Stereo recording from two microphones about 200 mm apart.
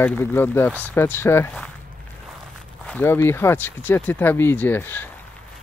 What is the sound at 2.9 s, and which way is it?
Speech, 10° left (ahead or behind).